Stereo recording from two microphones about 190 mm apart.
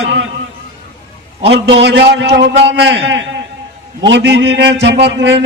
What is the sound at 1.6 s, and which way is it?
A man's voice, 65° right (ahead or behind).